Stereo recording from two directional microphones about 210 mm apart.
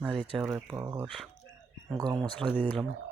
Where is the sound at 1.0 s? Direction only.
Centre (ahead or behind).